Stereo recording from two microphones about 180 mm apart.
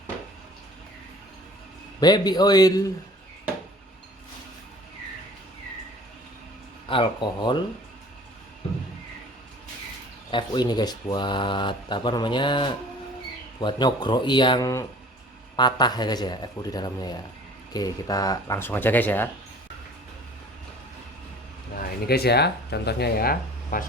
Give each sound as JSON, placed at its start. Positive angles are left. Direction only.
{"t": 2.0, "sound": "speech", "side_deg": 20}
{"t": 6.8, "sound": "speech", "side_deg": 30}
{"t": 10.3, "sound": "speech", "side_deg": 25}
{"t": 22.0, "sound": "speech", "side_deg": 60}